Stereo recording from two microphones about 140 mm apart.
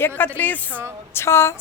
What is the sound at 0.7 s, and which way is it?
Speech, 15° right (ahead or behind).